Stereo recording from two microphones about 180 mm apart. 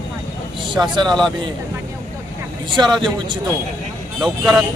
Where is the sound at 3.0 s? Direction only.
25° right (ahead or behind).